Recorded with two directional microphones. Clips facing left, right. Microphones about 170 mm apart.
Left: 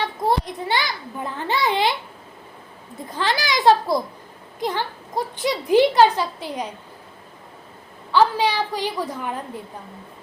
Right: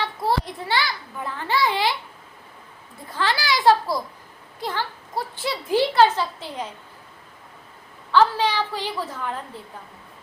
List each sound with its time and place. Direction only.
0.0 s a child's voice: 20° left (ahead or behind)
3.1 s a child's voice: 20° left (ahead or behind)
8.1 s a woman's voice: 15° left (ahead or behind)